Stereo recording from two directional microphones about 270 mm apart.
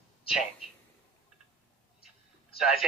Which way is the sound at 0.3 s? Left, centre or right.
Centre.